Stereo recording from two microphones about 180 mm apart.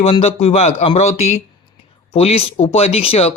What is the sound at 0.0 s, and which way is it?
Speech, 35° left (ahead or behind).